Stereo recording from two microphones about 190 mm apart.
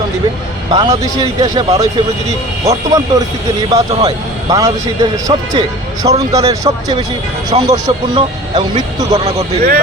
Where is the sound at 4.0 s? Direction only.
20° right (ahead or behind).